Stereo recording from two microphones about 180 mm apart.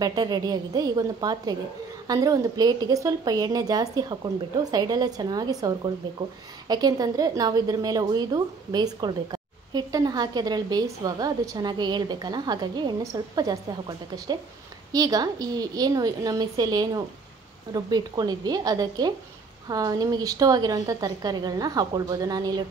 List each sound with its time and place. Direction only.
0.0 s a woman's voice: 20° right (ahead or behind)